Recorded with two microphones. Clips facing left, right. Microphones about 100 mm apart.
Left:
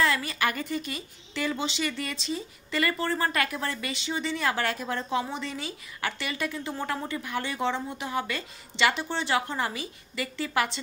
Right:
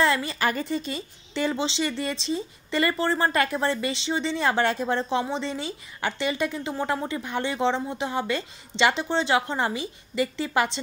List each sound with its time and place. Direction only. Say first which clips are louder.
0.0 s a woman's voice: right 3 dB; 30° right (ahead or behind)